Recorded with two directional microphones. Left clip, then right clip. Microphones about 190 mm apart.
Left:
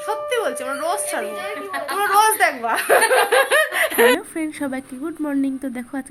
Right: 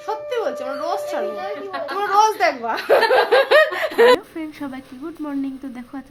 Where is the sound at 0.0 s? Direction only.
Centre (ahead or behind).